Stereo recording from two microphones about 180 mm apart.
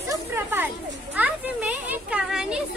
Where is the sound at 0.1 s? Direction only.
10° right (ahead or behind).